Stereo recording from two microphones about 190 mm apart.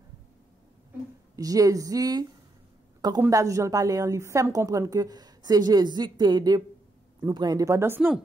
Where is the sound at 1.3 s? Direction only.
20° right (ahead or behind).